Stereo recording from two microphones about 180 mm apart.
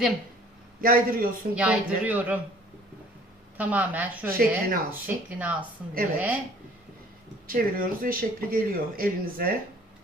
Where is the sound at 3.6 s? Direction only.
10° right (ahead or behind).